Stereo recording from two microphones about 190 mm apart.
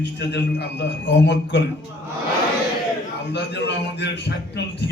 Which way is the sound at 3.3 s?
65° left (ahead or behind).